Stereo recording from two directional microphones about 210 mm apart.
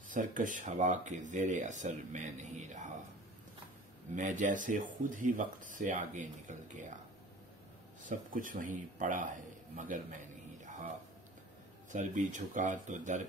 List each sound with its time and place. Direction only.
0.1 s speech: 40° right (ahead or behind)
4.1 s speech: 35° right (ahead or behind)
8.0 s speech: 40° right (ahead or behind)
10.6 s a sound: 35° right (ahead or behind)
11.9 s speech: 35° right (ahead or behind)